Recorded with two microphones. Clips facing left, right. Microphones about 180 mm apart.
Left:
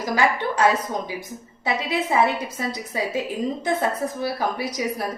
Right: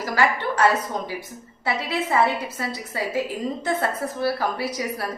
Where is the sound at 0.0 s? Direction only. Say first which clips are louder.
Left 1 dB; 15° left (ahead or behind).